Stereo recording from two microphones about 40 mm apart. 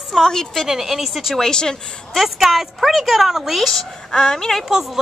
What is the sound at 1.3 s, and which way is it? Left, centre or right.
Speech, centre.